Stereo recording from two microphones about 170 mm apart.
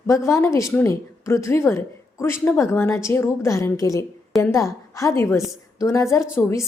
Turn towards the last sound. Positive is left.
turn(degrees=15)  # may be behind; listen again after turning